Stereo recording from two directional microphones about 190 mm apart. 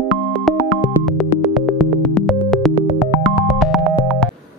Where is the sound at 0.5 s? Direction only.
Centre (ahead or behind).